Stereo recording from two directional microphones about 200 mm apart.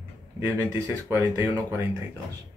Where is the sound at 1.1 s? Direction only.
15° right (ahead or behind).